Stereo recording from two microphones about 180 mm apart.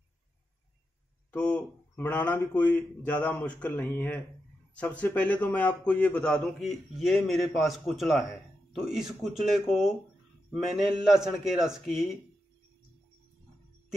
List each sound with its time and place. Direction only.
1.3 s a man's voice: 10° left (ahead or behind)